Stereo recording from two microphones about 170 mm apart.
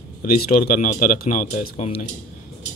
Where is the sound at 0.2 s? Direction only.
55° left (ahead or behind).